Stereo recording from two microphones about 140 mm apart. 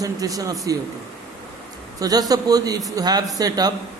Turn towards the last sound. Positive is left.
turn(degrees=-25)  # may be behind; listen again after turning